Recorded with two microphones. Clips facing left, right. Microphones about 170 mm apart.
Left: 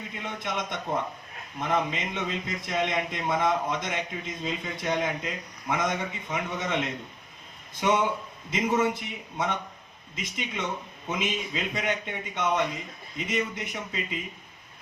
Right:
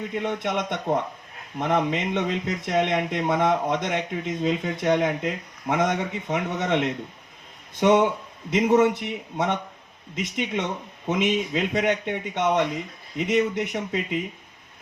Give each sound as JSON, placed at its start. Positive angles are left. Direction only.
{"t": 0.2, "sound": "speech", "side_deg": -60}